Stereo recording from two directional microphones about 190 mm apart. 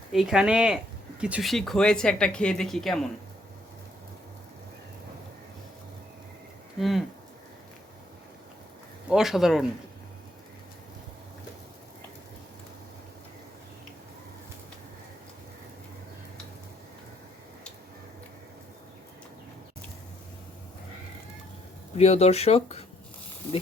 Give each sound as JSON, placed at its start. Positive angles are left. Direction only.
{"t": 0.1, "sound": "speech", "side_deg": -5}
{"t": 6.7, "sound": "speech", "side_deg": 0}
{"t": 9.0, "sound": "speech", "side_deg": 0}
{"t": 21.9, "sound": "speech", "side_deg": 35}